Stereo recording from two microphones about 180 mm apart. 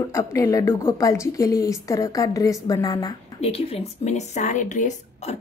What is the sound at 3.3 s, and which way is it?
A woman's voice, 35° left (ahead or behind).